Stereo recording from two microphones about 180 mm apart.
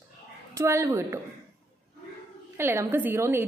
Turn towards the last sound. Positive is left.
turn(degrees=-10)  # may be behind; listen again after turning